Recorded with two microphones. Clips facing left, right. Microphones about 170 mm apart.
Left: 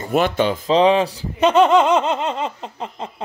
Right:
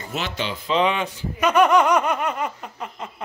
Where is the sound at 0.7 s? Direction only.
35° left (ahead or behind).